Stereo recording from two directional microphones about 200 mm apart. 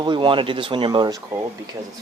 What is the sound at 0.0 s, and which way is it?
Speech, 25° right (ahead or behind).